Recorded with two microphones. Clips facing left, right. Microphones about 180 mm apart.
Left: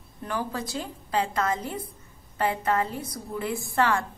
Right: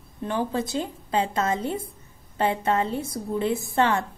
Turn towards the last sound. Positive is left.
turn(degrees=-25)  # may be behind; listen again after turning